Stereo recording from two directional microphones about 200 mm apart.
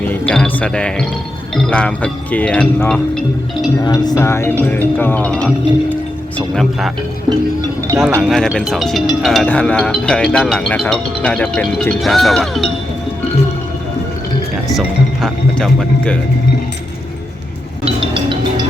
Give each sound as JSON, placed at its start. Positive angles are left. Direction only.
{"t": 0.1, "sound": "speech", "side_deg": 5}
{"t": 3.8, "sound": "speech", "side_deg": 20}
{"t": 7.3, "sound": "music", "side_deg": -20}
{"t": 7.9, "sound": "speech", "side_deg": -5}
{"t": 14.7, "sound": "speech", "side_deg": 0}
{"t": 17.8, "sound": "music", "side_deg": -25}